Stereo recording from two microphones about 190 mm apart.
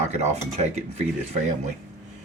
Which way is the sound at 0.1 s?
35° right (ahead or behind).